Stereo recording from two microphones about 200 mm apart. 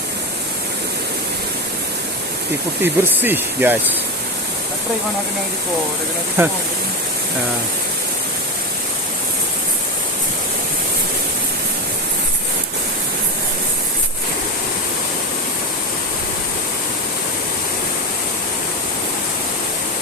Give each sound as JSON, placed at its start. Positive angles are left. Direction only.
{"t": 2.8, "sound": "speech", "side_deg": -10}
{"t": 6.4, "sound": "speech", "side_deg": -10}